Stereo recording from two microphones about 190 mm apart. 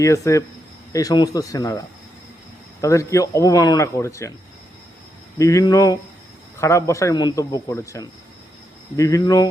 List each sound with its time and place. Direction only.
0.0 s speech: 15° left (ahead or behind)
2.8 s speech: 15° left (ahead or behind)
5.4 s speech: 15° left (ahead or behind)